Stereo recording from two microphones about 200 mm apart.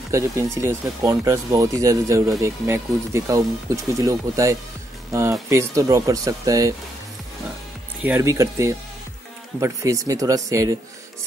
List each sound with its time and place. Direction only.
0.1 s speech: 15° right (ahead or behind)
8.0 s speech: 10° right (ahead or behind)